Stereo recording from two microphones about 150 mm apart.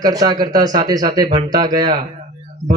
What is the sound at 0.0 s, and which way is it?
A man's voice, 25° right (ahead or behind).